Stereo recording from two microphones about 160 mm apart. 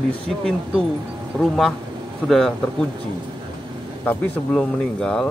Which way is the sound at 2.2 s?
Centre (ahead or behind).